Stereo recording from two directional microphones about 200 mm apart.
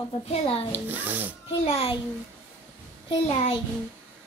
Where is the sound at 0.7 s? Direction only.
10° right (ahead or behind).